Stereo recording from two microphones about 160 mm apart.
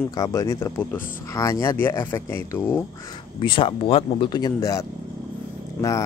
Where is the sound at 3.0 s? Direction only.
30° left (ahead or behind).